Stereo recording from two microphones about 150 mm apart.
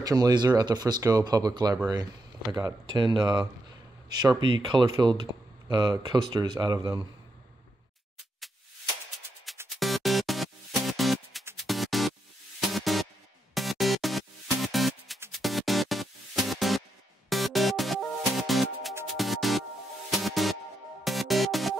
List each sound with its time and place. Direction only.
0.0 s speech: 25° right (ahead or behind)
9.7 s music: centre (ahead or behind)